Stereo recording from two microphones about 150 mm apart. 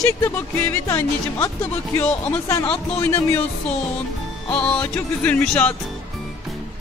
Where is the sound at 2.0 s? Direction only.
5° left (ahead or behind).